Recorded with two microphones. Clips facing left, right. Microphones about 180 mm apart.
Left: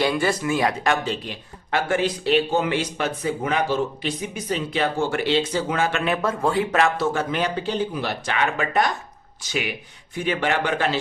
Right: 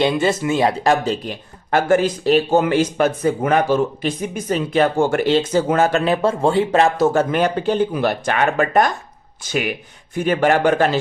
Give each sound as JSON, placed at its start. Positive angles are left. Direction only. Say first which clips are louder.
{"t": 0.0, "sound": "speech", "louder": "right 4 dB", "side_deg": -20}
{"t": 6.9, "sound": "speech", "louder": "right 7 dB", "side_deg": -45}